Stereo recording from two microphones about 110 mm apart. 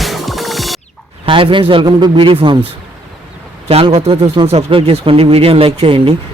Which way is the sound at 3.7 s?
60° right (ahead or behind).